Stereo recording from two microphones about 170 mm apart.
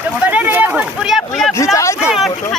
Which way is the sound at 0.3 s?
10° right (ahead or behind).